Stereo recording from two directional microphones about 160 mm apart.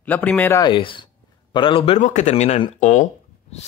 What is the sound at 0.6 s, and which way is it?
A man's voice, 30° left (ahead or behind).